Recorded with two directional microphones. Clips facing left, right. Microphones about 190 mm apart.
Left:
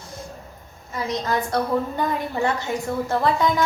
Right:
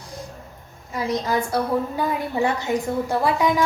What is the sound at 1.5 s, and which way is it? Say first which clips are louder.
A woman's voice: even; 10° right (ahead or behind).